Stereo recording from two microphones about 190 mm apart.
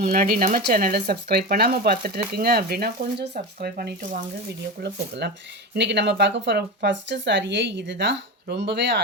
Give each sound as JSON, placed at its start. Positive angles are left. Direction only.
{"t": 0.0, "sound": "speech", "side_deg": -50}